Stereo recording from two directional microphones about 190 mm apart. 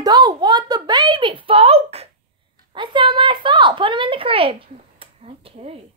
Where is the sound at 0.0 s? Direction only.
20° right (ahead or behind).